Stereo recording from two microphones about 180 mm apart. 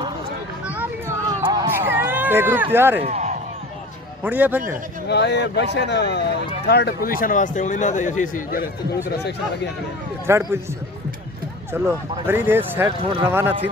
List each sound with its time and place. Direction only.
0.7 s a sound: 10° right (ahead or behind)
1.4 s a sound: 20° right (ahead or behind)
3.0 s speech: 40° right (ahead or behind)
4.2 s speech: 10° right (ahead or behind)
5.0 s speech: 70° left (ahead or behind)
7.1 s a man's voice: 50° left (ahead or behind)
10.2 s speech: 15° right (ahead or behind)
11.7 s speech: 10° right (ahead or behind)